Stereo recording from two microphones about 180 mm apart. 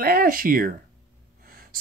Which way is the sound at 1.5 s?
55° right (ahead or behind).